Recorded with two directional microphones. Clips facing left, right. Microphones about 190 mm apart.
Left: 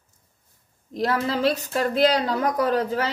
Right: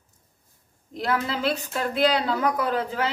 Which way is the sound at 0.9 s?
40° left (ahead or behind).